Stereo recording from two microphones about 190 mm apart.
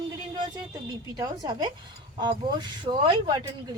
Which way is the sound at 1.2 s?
20° right (ahead or behind).